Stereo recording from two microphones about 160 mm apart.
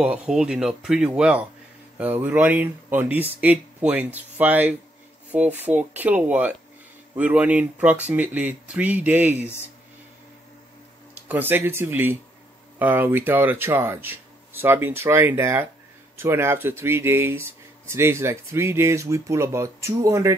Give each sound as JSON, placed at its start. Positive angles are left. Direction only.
{"t": 0.0, "sound": "speech", "side_deg": -5}
{"t": 11.2, "sound": "speech", "side_deg": -15}